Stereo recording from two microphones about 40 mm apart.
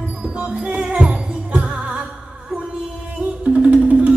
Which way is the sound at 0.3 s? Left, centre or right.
Right.